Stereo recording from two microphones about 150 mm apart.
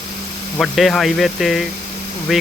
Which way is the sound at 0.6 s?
Centre (ahead or behind).